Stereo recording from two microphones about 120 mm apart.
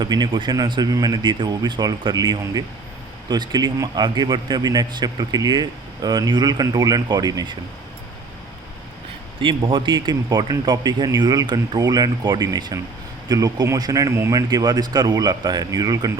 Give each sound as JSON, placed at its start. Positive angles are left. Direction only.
{"t": 0.0, "sound": "a man's voice", "side_deg": -35}
{"t": 9.4, "sound": "a man's voice", "side_deg": -45}